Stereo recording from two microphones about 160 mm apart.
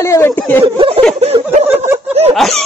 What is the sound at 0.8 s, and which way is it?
Speech, 35° right (ahead or behind).